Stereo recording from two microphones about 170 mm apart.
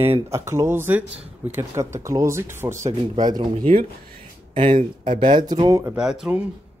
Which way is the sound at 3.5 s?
50° right (ahead or behind).